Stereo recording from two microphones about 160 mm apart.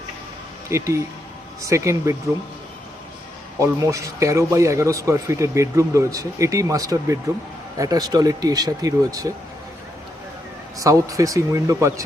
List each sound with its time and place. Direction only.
0.7 s a man's voice: 20° right (ahead or behind)
3.6 s a man's voice: 20° right (ahead or behind)
10.8 s a man's voice: 20° right (ahead or behind)